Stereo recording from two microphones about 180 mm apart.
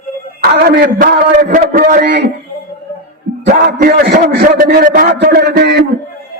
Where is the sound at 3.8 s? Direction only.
55° right (ahead or behind).